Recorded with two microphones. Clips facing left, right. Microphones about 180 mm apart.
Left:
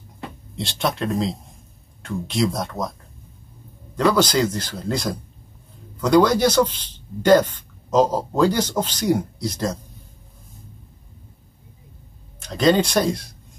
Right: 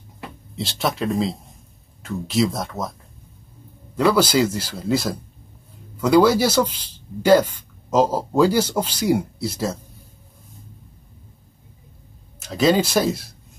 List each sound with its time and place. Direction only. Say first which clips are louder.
0.6 s speech: even; centre (ahead or behind)
12.4 s speech: even; 5° right (ahead or behind)